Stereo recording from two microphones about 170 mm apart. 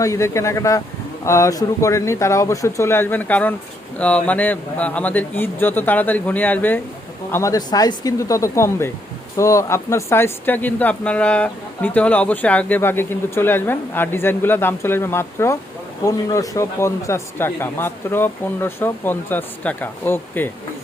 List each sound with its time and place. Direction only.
0.0 s speech: 15° left (ahead or behind)